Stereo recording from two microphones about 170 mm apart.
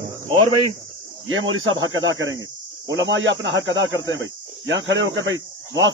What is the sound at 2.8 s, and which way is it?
A man's voice, 90° right.